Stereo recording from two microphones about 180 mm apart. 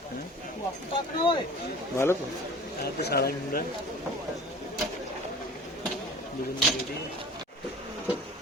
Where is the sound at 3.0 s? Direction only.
60° left (ahead or behind).